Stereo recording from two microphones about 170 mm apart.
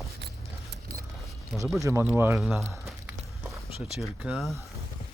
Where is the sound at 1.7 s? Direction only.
15° right (ahead or behind).